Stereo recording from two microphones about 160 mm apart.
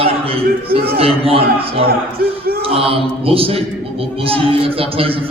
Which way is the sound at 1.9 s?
70° right (ahead or behind).